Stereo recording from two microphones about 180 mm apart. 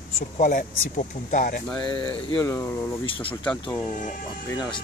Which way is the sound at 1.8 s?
25° left (ahead or behind).